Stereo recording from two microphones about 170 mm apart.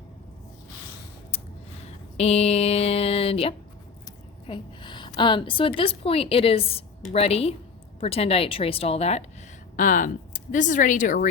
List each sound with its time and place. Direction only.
2.1 s a sound: 35° left (ahead or behind)
4.4 s a woman's voice: 30° left (ahead or behind)
9.7 s speech: 50° left (ahead or behind)